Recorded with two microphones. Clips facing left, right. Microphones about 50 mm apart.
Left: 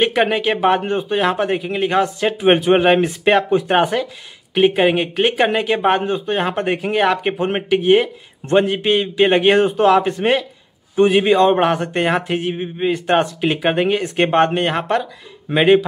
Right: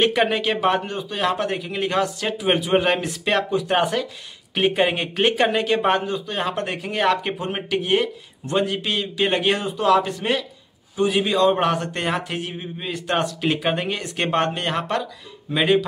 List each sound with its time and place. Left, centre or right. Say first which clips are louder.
0.0 s speech: left 3 dB; centre
4.6 s speech: left 6 dB; centre
6.0 s speech: left 6 dB; left
7.3 s speech: left 7 dB; left
7.7 s speech: left 7 dB; left
9.6 s speech: left 5 dB; left